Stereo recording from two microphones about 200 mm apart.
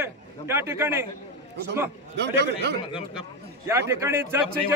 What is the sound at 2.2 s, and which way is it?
Speech, 60° right (ahead or behind).